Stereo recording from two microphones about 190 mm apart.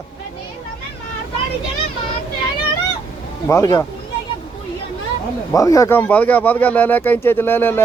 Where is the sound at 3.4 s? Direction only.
15° left (ahead or behind).